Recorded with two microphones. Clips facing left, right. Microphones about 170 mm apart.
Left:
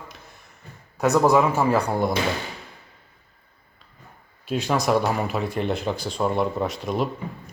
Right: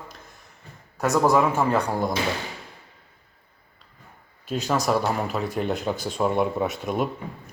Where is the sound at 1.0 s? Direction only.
15° left (ahead or behind).